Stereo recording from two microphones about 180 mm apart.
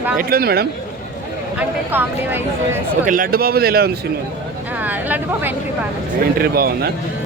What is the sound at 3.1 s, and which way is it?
Speech, 55° right (ahead or behind).